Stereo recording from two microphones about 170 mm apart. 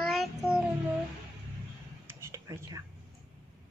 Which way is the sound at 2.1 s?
15° right (ahead or behind).